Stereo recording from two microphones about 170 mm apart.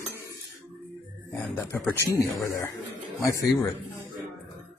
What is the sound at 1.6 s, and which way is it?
Speech, 10° left (ahead or behind).